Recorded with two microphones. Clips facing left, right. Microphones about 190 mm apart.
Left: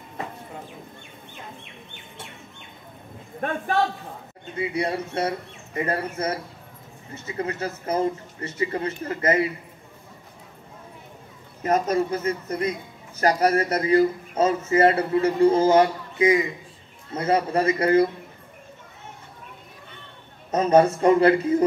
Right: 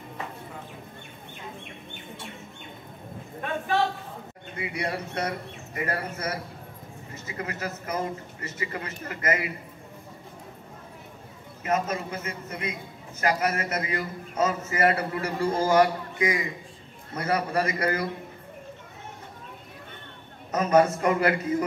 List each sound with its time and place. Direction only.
3.3 s a man's voice: 50° left (ahead or behind)
4.6 s a man's voice: 25° left (ahead or behind)
11.6 s a man's voice: 40° left (ahead or behind)
20.5 s a man's voice: 30° left (ahead or behind)